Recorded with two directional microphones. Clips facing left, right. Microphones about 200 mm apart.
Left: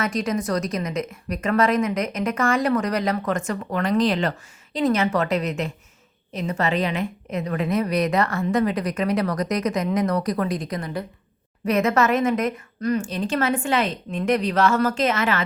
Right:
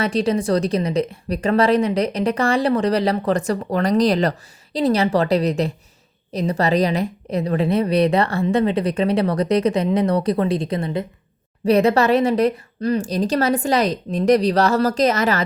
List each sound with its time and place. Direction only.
0.0 s a woman's voice: 30° right (ahead or behind)